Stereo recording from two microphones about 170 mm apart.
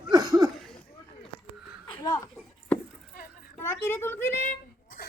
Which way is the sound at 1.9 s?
25° left (ahead or behind).